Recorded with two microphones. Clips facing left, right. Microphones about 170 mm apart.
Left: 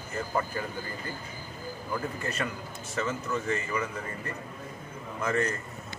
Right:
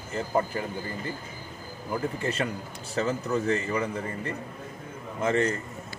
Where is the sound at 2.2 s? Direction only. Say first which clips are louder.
Right 4 dB; 30° right (ahead or behind).